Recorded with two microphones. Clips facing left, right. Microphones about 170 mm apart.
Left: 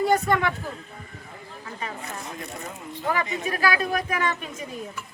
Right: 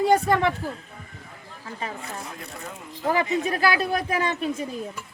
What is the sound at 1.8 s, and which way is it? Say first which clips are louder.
Speech: right 1 dB; 30° right (ahead or behind).